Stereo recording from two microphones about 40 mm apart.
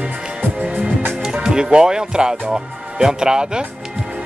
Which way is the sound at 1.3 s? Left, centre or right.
Centre.